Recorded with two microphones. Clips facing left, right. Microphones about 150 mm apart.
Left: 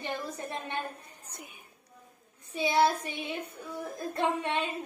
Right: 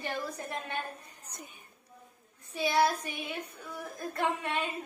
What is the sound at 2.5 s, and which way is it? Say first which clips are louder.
Speech: left 2 dB; 25° left (ahead or behind).